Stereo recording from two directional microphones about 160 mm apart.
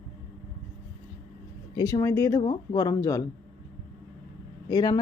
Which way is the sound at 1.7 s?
20° left (ahead or behind).